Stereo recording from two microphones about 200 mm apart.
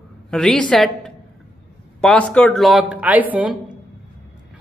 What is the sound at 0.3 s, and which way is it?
A woman's voice, 5° left (ahead or behind).